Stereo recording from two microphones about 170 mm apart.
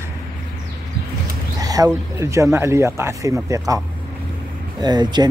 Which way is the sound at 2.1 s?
15° right (ahead or behind).